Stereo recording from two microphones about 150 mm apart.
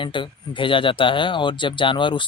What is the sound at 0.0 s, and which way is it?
Speech, 35° left (ahead or behind).